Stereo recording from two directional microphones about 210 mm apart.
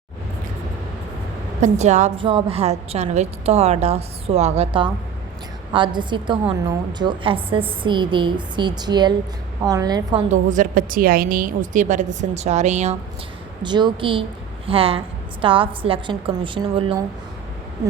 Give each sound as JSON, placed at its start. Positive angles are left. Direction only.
{"t": 1.6, "sound": "a woman's voice", "side_deg": -35}
{"t": 10.3, "sound": "a woman's voice", "side_deg": -35}
{"t": 13.6, "sound": "a woman's voice", "side_deg": -20}